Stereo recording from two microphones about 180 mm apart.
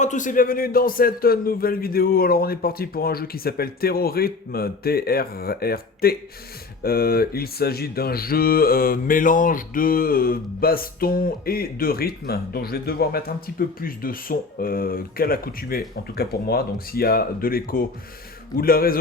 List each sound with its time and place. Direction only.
0.0 s speech: 45° left (ahead or behind)